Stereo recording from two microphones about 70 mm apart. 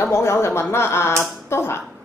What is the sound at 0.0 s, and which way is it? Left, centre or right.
A woman's voice, left.